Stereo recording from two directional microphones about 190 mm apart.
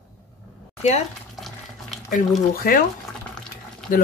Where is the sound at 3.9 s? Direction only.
45° left (ahead or behind).